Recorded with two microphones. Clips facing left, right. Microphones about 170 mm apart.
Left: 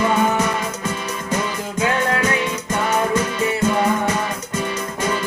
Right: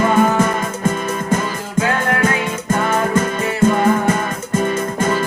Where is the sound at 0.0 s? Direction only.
50° right (ahead or behind).